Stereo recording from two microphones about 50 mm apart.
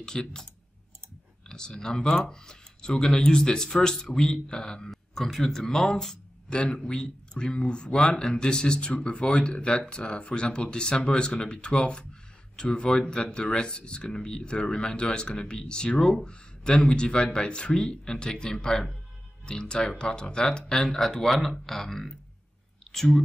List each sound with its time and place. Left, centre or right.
0.0 s speech: centre
1.5 s speech: centre